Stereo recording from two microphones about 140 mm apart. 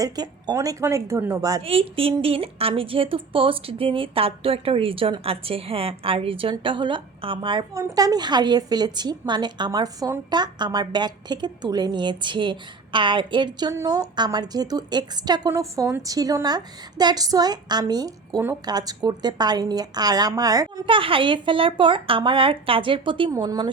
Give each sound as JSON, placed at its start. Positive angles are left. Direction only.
{"t": 0.0, "sound": "a woman's voice", "side_deg": -25}
{"t": 1.6, "sound": "a woman's voice", "side_deg": -40}
{"t": 7.7, "sound": "a woman's voice", "side_deg": -25}
{"t": 23.3, "sound": "a woman's voice", "side_deg": -25}